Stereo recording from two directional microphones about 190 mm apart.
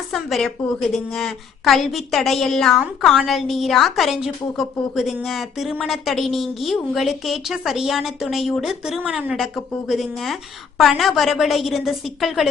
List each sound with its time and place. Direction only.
0.1 s a woman's voice: centre (ahead or behind)